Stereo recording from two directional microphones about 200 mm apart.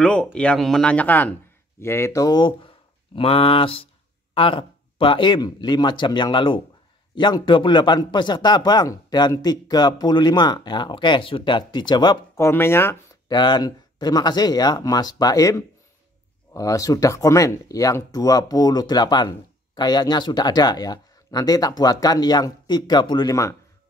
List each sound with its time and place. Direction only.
0.0 s a man's voice: 5° left (ahead or behind)